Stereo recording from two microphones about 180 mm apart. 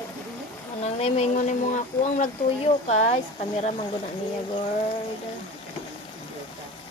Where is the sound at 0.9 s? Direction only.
35° left (ahead or behind).